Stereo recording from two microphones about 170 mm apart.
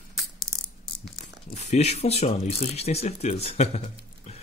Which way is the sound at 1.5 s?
40° left (ahead or behind).